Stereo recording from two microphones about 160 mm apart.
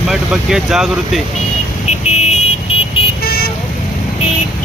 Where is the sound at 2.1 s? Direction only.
45° left (ahead or behind).